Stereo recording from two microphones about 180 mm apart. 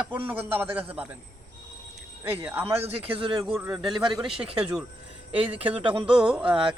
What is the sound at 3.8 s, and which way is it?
Speech, 20° right (ahead or behind).